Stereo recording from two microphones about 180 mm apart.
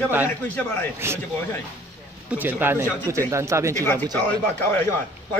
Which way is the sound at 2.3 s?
10° right (ahead or behind).